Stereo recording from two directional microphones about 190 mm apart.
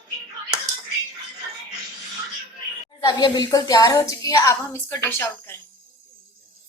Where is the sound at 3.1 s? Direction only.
20° left (ahead or behind).